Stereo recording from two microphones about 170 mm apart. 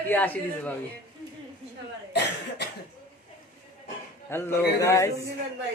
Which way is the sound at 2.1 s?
90° left.